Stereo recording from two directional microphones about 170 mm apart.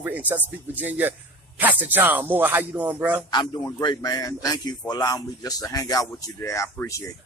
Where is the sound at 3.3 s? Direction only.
25° left (ahead or behind).